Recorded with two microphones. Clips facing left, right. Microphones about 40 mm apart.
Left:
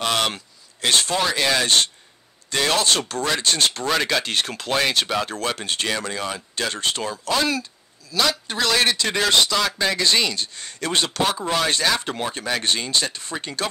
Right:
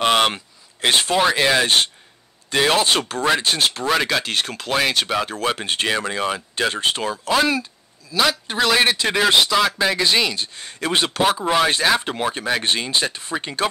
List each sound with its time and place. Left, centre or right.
0.0 s speech: right